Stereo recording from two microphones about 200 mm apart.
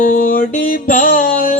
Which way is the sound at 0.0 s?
45° left (ahead or behind).